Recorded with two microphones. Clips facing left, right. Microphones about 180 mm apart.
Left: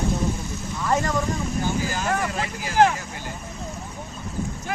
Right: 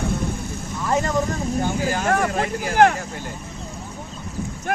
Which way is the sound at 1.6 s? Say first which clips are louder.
Right 4 dB; 55° right (ahead or behind).